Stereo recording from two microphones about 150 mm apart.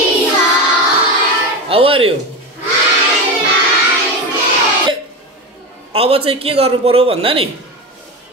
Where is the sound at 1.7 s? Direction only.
40° right (ahead or behind).